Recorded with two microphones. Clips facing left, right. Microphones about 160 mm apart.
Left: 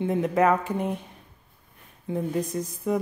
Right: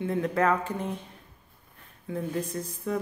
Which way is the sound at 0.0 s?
20° left (ahead or behind).